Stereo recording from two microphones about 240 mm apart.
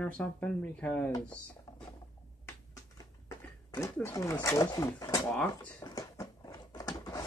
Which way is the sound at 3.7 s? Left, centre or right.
Centre.